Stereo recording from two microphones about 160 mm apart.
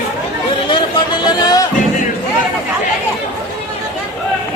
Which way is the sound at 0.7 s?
30° left (ahead or behind).